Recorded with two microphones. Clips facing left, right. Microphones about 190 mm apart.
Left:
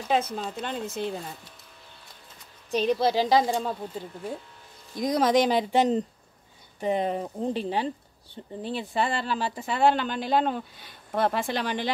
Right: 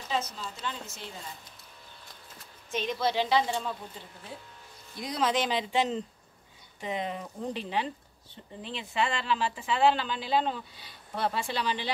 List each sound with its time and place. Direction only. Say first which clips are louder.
0.1 s speech: left 7 dB; 60° left (ahead or behind)
2.7 s speech: left 6 dB; 35° left (ahead or behind)
4.9 s speech: left 7 dB; 45° left (ahead or behind)